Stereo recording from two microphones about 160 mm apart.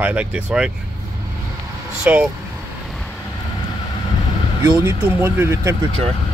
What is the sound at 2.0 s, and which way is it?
Speech, 10° right (ahead or behind).